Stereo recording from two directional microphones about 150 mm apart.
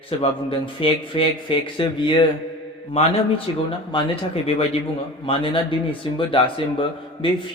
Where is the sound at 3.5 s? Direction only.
35° left (ahead or behind).